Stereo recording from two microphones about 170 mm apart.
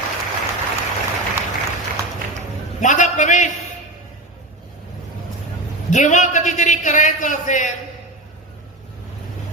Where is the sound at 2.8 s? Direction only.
45° left (ahead or behind).